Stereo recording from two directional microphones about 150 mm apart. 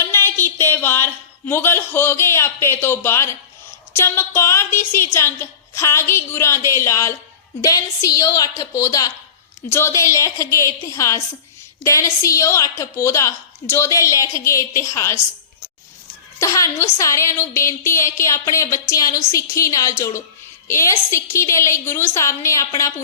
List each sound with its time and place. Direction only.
0.0 s a sound: 15° left (ahead or behind)
3.9 s a woman's voice: 15° left (ahead or behind)
16.4 s a woman's voice: 20° left (ahead or behind)